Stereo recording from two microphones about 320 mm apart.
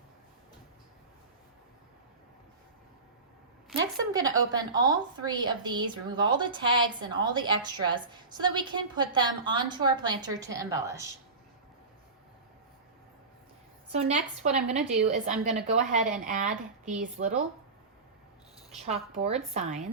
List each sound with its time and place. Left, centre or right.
4.1 s a woman's voice: centre
14.0 s a woman's voice: right
18.9 s a woman's voice: centre